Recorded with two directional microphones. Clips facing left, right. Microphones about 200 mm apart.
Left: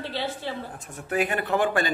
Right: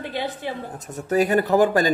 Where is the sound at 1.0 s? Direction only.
40° right (ahead or behind).